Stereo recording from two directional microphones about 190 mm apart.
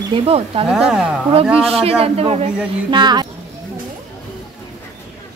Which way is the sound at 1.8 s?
30° right (ahead or behind).